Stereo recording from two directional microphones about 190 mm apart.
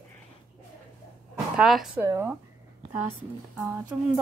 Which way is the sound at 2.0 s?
15° right (ahead or behind).